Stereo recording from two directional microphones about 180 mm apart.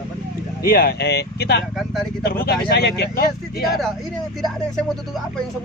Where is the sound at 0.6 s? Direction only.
55° left (ahead or behind).